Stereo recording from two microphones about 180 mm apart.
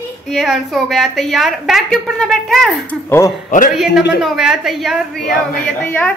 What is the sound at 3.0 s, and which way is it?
Speech, 15° left (ahead or behind).